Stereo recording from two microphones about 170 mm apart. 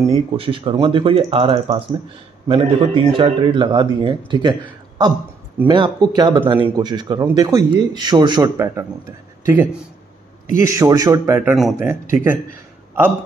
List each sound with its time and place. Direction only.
0.1 s a man's voice: 30° right (ahead or behind); by 11.5 s 15° right (ahead or behind)
11.5 s speech: centre (ahead or behind)
11.9 s speech: 15° right (ahead or behind)